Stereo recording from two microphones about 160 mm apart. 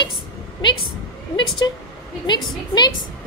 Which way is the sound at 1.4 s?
30° left (ahead or behind).